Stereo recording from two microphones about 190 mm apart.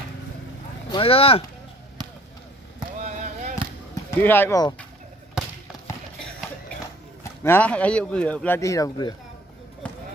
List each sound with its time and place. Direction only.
0.9 s speech: 30° left (ahead or behind)
3.0 s a sound: 40° right (ahead or behind)
4.2 s speech: 10° left (ahead or behind)
7.4 s speech: 10° left (ahead or behind)
9.8 s basketball bounce: 5° left (ahead or behind)